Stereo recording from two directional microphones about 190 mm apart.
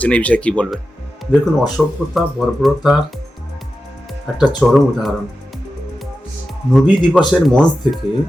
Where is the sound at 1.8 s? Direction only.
5° right (ahead or behind).